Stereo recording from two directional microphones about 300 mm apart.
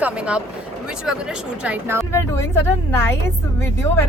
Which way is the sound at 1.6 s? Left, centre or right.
Centre.